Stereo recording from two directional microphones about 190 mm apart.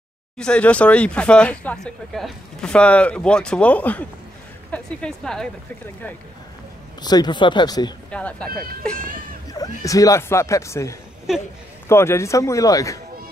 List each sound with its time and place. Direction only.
0.4 s a woman's voice: 5° left (ahead or behind)
7.0 s speech: 20° left (ahead or behind)
8.1 s speech: 5° left (ahead or behind)
9.5 s speech: 20° left (ahead or behind)